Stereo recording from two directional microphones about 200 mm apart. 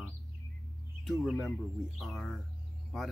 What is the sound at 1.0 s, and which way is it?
Speech, centre (ahead or behind).